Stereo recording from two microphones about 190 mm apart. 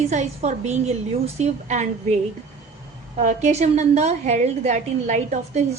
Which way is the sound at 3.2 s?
40° right (ahead or behind).